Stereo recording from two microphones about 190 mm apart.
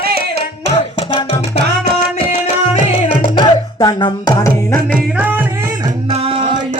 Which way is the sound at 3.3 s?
20° left (ahead or behind).